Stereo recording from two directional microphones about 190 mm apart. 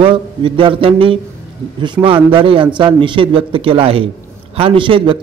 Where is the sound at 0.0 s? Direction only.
25° right (ahead or behind).